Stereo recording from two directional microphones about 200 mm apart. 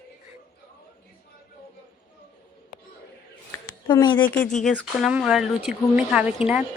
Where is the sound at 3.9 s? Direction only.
20° left (ahead or behind).